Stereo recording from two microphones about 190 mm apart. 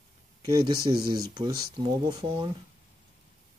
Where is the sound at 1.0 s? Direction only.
20° right (ahead or behind).